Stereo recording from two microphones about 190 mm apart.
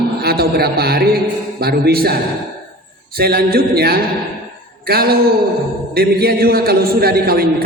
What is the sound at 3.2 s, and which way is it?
A man's voice, 55° right (ahead or behind).